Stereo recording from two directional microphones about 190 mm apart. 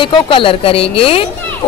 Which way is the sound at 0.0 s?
25° left (ahead or behind).